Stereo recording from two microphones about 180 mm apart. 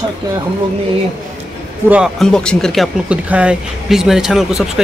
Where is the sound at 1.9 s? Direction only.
Centre (ahead or behind).